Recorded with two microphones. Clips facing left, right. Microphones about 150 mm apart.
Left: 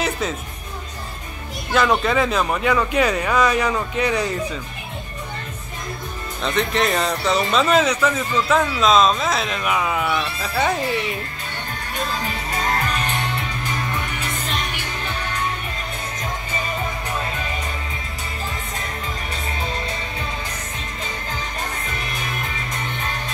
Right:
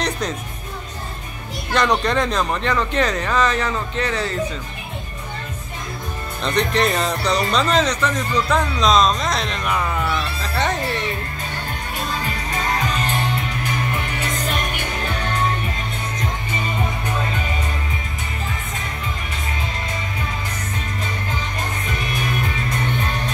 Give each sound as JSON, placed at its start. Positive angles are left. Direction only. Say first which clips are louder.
{"t": 1.7, "sound": "speech", "louder": "left 1 dB", "side_deg": 5}
{"t": 6.4, "sound": "speech", "louder": "right 1 dB", "side_deg": 0}
{"t": 14.4, "sound": "music", "louder": "right 3 dB", "side_deg": -50}